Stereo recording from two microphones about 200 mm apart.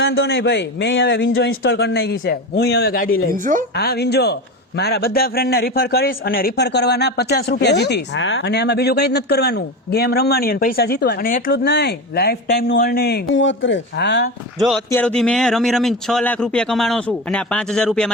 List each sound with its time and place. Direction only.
0.0 s a man's voice: 60° left (ahead or behind)
3.3 s a woman's voice: 40° right (ahead or behind)
3.8 s a man's voice: 55° left (ahead or behind)
11.5 s a man's voice: 60° left (ahead or behind)
14.8 s speech: 10° left (ahead or behind)